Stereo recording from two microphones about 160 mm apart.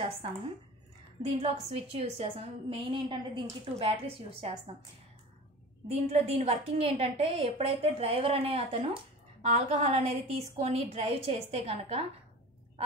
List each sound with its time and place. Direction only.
1.4 s a woman's voice: 40° right (ahead or behind)
5.9 s a woman's voice: 40° right (ahead or behind)